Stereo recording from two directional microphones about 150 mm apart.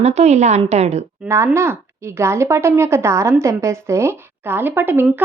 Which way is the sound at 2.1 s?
20° right (ahead or behind).